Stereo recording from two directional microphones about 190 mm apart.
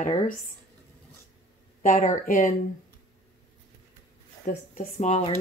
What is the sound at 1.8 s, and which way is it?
Speech, 45° left (ahead or behind).